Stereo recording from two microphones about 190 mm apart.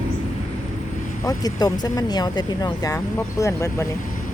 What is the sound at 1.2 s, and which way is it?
Speech, 20° left (ahead or behind).